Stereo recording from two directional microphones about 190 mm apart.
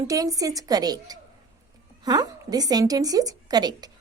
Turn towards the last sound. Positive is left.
turn(degrees=-20)  # may be behind; listen again after turning